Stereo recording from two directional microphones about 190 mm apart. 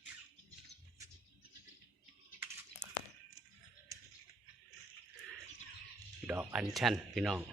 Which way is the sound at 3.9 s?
15° right (ahead or behind).